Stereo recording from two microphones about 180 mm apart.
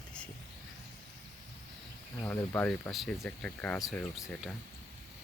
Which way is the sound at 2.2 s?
15° left (ahead or behind).